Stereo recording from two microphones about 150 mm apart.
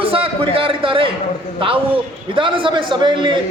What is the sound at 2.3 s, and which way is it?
Speech, 35° right (ahead or behind).